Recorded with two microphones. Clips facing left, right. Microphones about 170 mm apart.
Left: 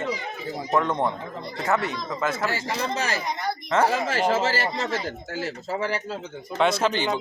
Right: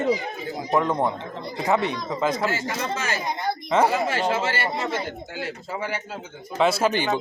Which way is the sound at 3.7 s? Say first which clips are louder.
Right 2 dB; 10° right (ahead or behind).